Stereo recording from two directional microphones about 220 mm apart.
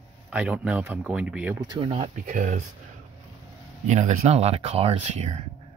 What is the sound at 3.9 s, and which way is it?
Speech, 30° right (ahead or behind).